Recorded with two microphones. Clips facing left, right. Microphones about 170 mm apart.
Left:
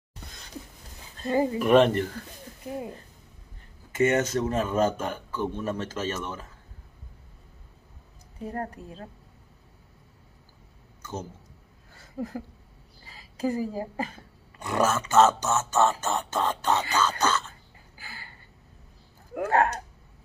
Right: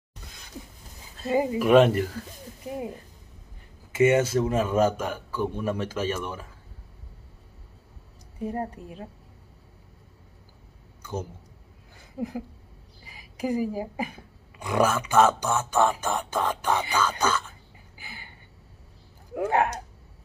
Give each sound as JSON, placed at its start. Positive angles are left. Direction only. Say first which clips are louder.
{"t": 1.1, "sound": "a man's voice", "louder": "even", "side_deg": -5}
{"t": 3.9, "sound": "a man's voice", "louder": "right 3 dB", "side_deg": -10}
{"t": 8.4, "sound": "a man's voice", "louder": "right 3 dB", "side_deg": -20}
{"t": 11.0, "sound": "a sound", "louder": "right 3 dB", "side_deg": -10}
{"t": 13.0, "sound": "speech", "louder": "left 2 dB", "side_deg": -15}
{"t": 19.3, "sound": "a man's voice", "louder": "even", "side_deg": -15}